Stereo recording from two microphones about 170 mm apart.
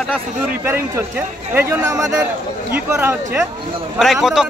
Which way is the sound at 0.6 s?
15° right (ahead or behind).